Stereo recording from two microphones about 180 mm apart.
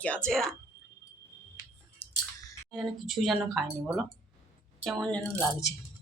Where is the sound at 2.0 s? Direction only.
10° left (ahead or behind).